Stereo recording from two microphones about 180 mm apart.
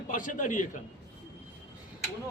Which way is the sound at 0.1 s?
45° left (ahead or behind).